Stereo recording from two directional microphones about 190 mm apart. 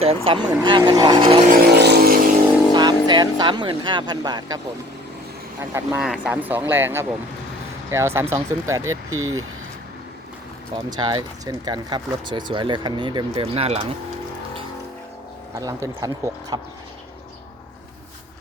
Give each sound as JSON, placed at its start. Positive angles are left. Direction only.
{"t": 0.0, "sound": "speech", "side_deg": -30}
{"t": 1.6, "sound": "vehicle", "side_deg": -60}
{"t": 2.7, "sound": "speech", "side_deg": -20}
{"t": 6.0, "sound": "speech", "side_deg": -5}
{"t": 8.9, "sound": "speech", "side_deg": -90}
{"t": 10.9, "sound": "speech", "side_deg": -20}
{"t": 15.5, "sound": "speech", "side_deg": -15}